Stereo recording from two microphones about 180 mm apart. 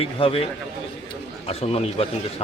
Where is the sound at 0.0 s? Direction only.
30° left (ahead or behind).